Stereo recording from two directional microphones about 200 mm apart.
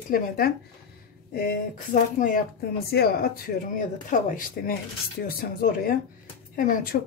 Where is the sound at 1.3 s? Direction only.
45° left (ahead or behind).